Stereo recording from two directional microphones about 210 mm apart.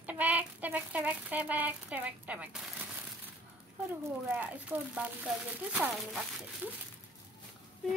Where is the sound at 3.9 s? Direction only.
10° right (ahead or behind).